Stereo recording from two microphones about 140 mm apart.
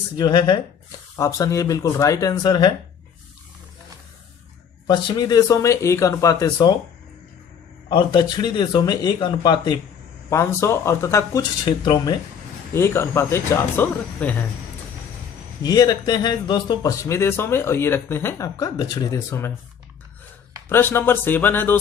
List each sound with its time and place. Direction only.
0.2 s a man's voice: 30° left (ahead or behind)
4.8 s a man's voice: 35° left (ahead or behind)
7.9 s a man's voice: 35° left (ahead or behind)
10.3 s a man's voice: 20° left (ahead or behind)
12.7 s a man's voice: 20° left (ahead or behind)
15.6 s a man's voice: 30° left (ahead or behind)
20.6 s speech: 15° left (ahead or behind)